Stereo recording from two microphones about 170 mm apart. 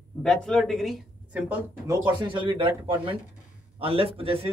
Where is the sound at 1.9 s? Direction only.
25° right (ahead or behind).